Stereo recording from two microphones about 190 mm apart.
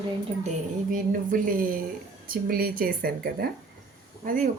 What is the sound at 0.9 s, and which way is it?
Speech, 45° right (ahead or behind).